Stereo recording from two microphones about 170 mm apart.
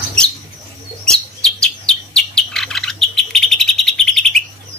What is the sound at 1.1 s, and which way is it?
Chirp, 5° left (ahead or behind).